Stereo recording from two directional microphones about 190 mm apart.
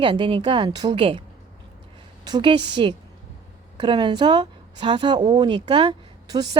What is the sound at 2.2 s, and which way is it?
Speech, 25° right (ahead or behind).